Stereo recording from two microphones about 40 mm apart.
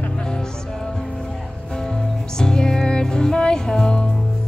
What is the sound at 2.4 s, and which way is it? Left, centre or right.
Music, centre.